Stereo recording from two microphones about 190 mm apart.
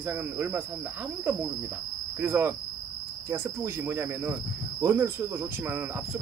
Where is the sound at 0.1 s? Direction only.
10° right (ahead or behind).